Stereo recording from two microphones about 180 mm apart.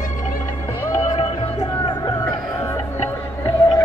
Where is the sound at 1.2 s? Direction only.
30° left (ahead or behind).